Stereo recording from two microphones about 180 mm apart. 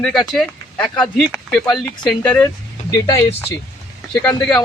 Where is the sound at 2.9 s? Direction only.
20° left (ahead or behind).